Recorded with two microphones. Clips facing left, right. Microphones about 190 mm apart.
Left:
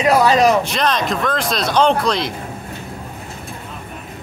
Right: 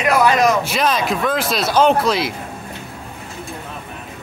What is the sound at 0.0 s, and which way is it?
Speech, 30° left (ahead or behind).